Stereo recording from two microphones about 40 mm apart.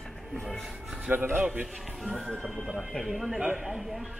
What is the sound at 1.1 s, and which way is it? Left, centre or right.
Speech, right.